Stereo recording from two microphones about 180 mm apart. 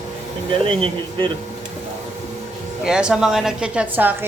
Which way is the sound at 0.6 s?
30° right (ahead or behind).